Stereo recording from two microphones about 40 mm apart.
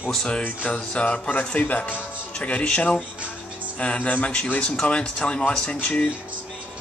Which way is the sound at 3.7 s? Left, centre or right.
Left.